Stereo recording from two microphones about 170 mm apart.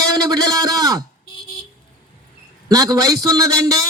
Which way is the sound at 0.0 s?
20° right (ahead or behind).